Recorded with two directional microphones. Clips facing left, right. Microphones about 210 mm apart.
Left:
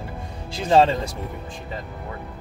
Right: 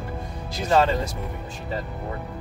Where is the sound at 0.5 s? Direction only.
30° left (ahead or behind).